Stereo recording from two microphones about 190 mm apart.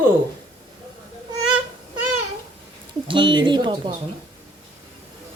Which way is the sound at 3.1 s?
25° right (ahead or behind).